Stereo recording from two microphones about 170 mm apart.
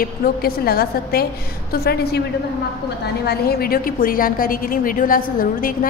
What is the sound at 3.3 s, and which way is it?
A woman's voice, 65° left (ahead or behind).